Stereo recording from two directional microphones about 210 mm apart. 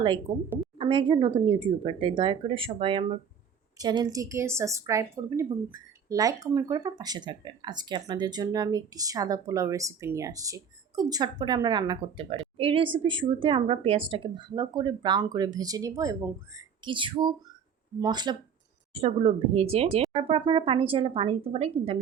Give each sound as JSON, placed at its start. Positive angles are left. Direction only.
{"t": 0.0, "sound": "a woman's voice", "side_deg": -25}